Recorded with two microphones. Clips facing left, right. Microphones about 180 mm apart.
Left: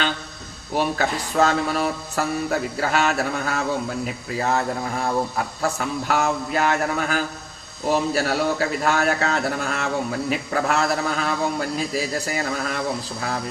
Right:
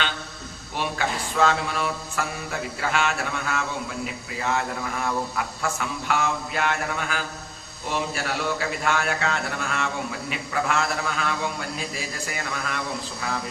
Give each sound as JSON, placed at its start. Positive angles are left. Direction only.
{"t": 0.8, "sound": "a man's voice", "side_deg": 40}